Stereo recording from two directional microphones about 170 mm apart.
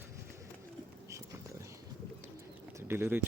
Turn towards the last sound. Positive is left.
turn(degrees=-15)  # may be behind; listen again after turning